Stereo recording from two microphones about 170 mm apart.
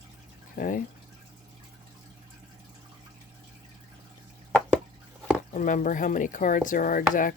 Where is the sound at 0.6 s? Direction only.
50° left (ahead or behind).